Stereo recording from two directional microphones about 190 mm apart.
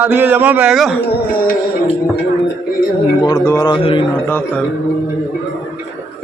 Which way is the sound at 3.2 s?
15° left (ahead or behind).